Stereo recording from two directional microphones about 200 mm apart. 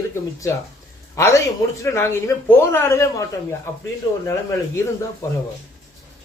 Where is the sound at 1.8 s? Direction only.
15° left (ahead or behind).